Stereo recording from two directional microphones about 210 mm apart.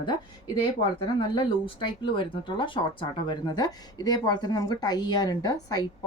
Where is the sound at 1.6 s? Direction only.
25° left (ahead or behind).